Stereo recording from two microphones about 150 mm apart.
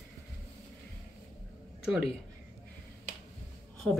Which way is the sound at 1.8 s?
5° right (ahead or behind).